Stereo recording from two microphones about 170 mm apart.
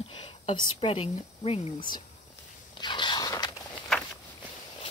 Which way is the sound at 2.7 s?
25° left (ahead or behind).